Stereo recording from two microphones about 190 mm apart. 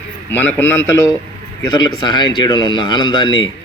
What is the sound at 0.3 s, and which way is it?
A man's voice, 10° left (ahead or behind).